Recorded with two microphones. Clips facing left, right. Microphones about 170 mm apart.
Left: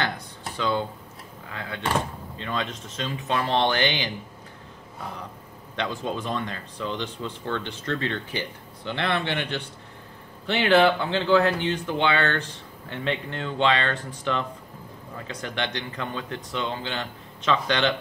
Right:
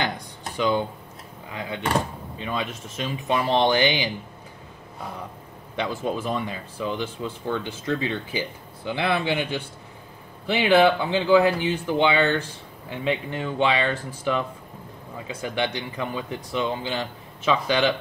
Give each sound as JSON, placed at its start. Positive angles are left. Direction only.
{"t": 0.0, "sound": "a sound", "side_deg": -15}
{"t": 1.5, "sound": "speech", "side_deg": -15}
{"t": 5.8, "sound": "speech", "side_deg": -10}